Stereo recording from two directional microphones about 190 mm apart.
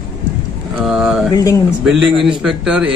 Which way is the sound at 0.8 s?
Centre (ahead or behind).